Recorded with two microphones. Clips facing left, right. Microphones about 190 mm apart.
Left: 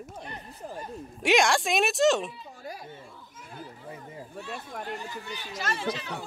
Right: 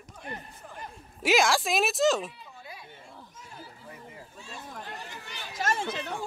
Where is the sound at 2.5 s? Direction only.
40° left (ahead or behind).